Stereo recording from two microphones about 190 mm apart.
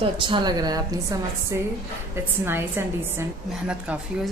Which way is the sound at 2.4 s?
10° right (ahead or behind).